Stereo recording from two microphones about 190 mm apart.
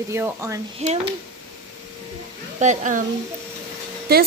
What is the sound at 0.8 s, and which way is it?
Speech, 35° right (ahead or behind).